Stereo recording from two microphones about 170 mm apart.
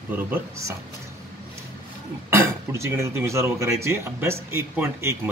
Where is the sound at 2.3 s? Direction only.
15° right (ahead or behind).